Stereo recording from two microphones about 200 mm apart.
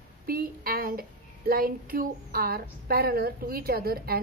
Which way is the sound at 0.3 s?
45° right (ahead or behind).